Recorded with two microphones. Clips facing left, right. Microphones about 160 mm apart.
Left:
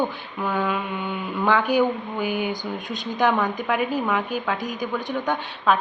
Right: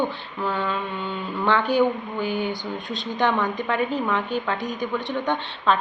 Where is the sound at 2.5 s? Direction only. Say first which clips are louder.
Even; 45° left (ahead or behind).